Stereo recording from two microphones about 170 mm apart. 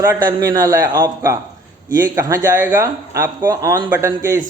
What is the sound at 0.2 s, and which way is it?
A man's voice, 25° right (ahead or behind).